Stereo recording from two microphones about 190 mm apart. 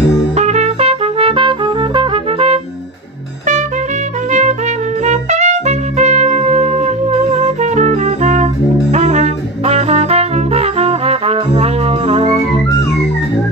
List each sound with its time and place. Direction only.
0.4 s trumpet: 35° right (ahead or behind)
4.3 s music: 40° right (ahead or behind)
8.9 s brass instrument: 35° right (ahead or behind)